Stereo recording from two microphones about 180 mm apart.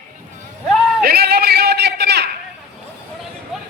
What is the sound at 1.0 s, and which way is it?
A man's voice, 60° right (ahead or behind).